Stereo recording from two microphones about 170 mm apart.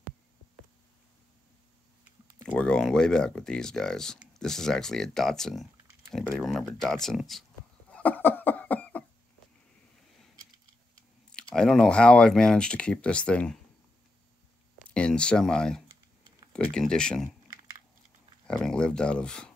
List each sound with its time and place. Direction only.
2.5 s speech: 5° left (ahead or behind)
7.9 s cough: 10° left (ahead or behind)
11.3 s speech: 5° left (ahead or behind)
15.0 s speech: 5° left (ahead or behind)
18.5 s speech: 5° left (ahead or behind)